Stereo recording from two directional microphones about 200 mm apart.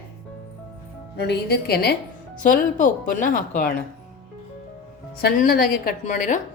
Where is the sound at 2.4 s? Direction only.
40° left (ahead or behind).